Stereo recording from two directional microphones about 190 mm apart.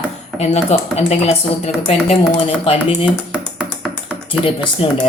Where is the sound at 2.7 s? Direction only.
30° left (ahead or behind).